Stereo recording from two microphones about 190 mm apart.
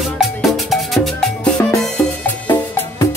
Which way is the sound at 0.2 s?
Centre (ahead or behind).